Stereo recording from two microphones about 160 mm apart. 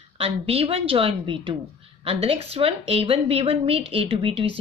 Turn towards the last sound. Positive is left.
turn(degrees=-35)  # may be behind; listen again after turning